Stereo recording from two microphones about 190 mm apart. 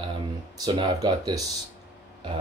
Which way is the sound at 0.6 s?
20° right (ahead or behind).